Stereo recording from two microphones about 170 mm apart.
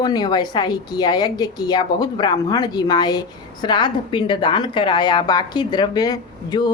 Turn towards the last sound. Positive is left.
turn(degrees=25)  # may be behind; listen again after turning